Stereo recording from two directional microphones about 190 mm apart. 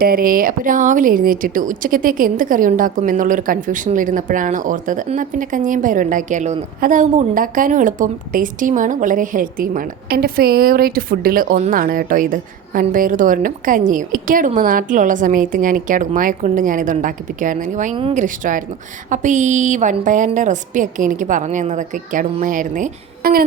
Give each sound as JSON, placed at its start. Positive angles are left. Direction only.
{"t": 0.0, "sound": "a woman's voice", "side_deg": -50}